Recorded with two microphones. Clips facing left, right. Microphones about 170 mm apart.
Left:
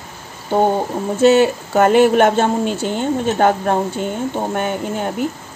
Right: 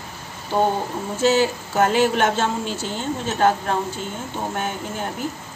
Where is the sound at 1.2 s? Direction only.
60° left (ahead or behind).